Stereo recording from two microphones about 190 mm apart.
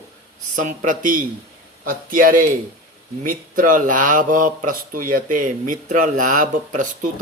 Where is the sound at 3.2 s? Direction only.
45° right (ahead or behind).